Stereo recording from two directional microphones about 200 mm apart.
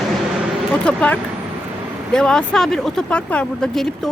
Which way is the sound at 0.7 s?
5° left (ahead or behind).